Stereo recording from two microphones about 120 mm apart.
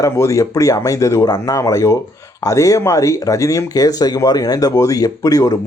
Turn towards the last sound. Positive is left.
turn(degrees=30)  # may be behind; listen again after turning